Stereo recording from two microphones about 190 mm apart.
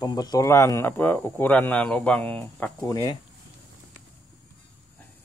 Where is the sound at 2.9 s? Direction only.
20° left (ahead or behind).